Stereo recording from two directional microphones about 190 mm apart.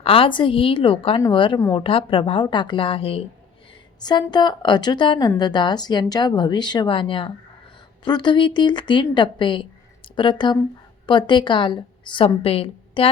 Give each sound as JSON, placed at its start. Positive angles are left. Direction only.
{"t": 0.0, "sound": "a woman's voice", "side_deg": 30}